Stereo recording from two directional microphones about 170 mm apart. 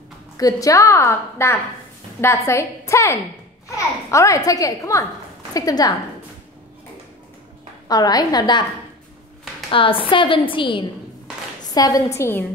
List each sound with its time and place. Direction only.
0.4 s a woman's voice: 20° left (ahead or behind)
7.9 s a child's voice: 20° left (ahead or behind)
9.7 s a child's voice: 30° left (ahead or behind); by 12.4 s 15° left (ahead or behind)